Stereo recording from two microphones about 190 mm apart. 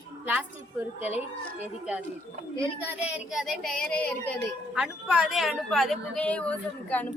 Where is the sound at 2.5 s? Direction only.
15° right (ahead or behind).